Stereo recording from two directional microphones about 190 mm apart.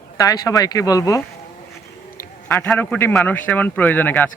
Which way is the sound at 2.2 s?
10° left (ahead or behind).